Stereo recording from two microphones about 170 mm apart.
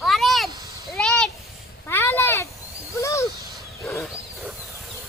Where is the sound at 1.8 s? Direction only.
15° left (ahead or behind).